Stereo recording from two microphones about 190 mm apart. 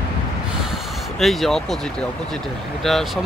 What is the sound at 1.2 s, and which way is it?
Speech, centre (ahead or behind).